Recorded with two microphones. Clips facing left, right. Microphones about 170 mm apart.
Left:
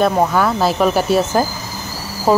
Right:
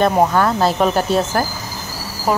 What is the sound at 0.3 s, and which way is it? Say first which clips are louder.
Speech: even; 10° left (ahead or behind).